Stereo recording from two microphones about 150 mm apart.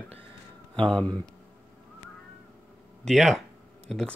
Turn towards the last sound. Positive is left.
turn(degrees=0)  # may be behind; listen again after turning